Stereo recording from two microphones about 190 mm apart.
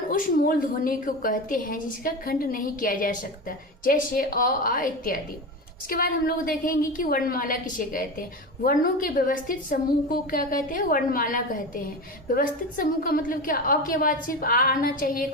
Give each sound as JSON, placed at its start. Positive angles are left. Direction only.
{"t": 0.1, "sound": "a woman's voice", "side_deg": 45}